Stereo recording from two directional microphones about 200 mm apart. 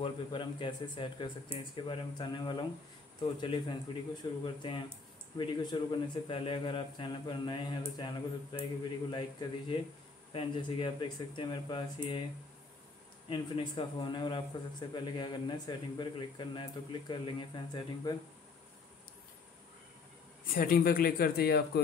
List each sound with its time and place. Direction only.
0.0 s speech: 25° left (ahead or behind)
13.3 s speech: 25° left (ahead or behind)
20.5 s speech: 45° left (ahead or behind)